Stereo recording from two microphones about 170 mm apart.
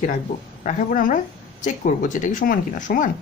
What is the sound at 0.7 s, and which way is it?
Speech, 50° left (ahead or behind).